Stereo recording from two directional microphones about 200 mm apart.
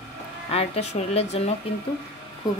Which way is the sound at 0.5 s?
30° left (ahead or behind).